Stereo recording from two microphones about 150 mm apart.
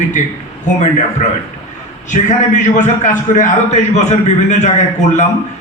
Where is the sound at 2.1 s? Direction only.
55° left (ahead or behind).